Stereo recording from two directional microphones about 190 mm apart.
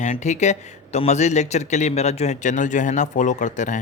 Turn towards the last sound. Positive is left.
turn(degrees=40)  # may be behind; listen again after turning